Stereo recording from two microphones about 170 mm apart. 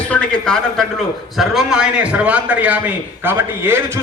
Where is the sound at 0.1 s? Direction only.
5° left (ahead or behind).